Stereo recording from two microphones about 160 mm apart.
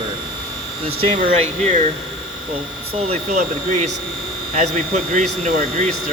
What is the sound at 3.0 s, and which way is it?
Speech, 45° right (ahead or behind).